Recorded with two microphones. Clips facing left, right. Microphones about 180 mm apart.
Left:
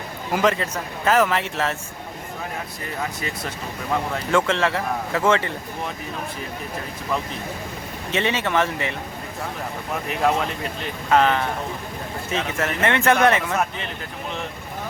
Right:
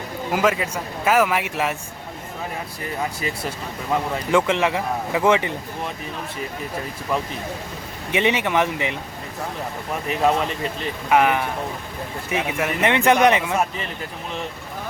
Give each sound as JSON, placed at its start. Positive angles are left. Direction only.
{"t": 0.3, "sound": "a man's voice", "side_deg": -5}
{"t": 4.3, "sound": "a man's voice", "side_deg": -15}
{"t": 8.1, "sound": "a man's voice", "side_deg": -15}
{"t": 11.1, "sound": "a man's voice", "side_deg": -15}